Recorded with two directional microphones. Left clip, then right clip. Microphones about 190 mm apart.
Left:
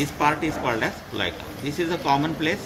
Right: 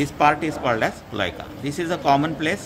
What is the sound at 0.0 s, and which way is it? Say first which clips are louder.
Speech: right 4 dB; 45° right (ahead or behind).